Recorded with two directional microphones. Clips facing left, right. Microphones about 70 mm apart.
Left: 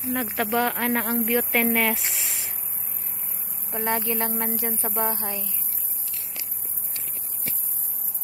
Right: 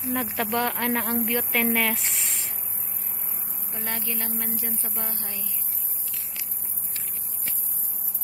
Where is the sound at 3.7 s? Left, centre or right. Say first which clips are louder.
Left 8 dB; left.